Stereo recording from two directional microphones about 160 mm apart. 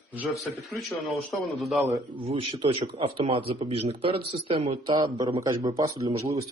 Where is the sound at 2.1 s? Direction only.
35° right (ahead or behind).